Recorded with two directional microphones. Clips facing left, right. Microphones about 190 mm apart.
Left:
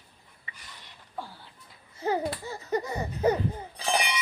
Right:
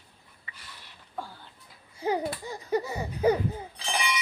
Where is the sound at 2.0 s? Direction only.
15° right (ahead or behind).